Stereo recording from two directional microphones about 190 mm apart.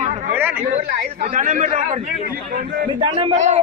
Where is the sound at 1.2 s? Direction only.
45° right (ahead or behind).